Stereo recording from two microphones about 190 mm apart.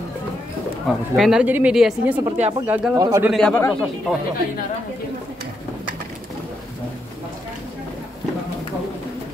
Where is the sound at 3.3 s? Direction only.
5° left (ahead or behind).